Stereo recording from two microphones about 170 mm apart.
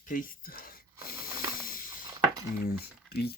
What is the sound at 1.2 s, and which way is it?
Hiss, 55° left (ahead or behind).